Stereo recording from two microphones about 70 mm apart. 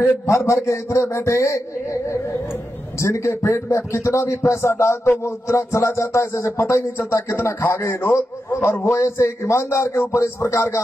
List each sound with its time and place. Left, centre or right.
0.0 s a man's voice: left
3.0 s a man's voice: left